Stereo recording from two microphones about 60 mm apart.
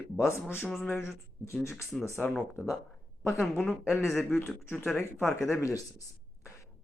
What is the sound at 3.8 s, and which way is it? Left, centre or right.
Speech, left.